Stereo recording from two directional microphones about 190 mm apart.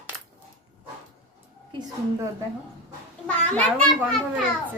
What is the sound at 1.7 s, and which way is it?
Speech, 20° right (ahead or behind).